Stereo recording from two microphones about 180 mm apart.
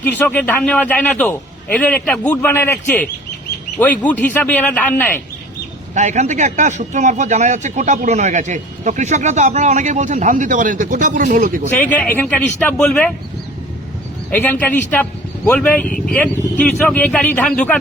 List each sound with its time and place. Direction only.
0.0 s a man's voice: 10° left (ahead or behind)
5.9 s speech: 40° right (ahead or behind)
11.7 s a man's voice: 10° left (ahead or behind)
14.3 s a man's voice: 10° left (ahead or behind)